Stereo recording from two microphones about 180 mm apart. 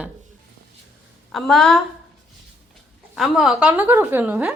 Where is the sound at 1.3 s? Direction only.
Centre (ahead or behind).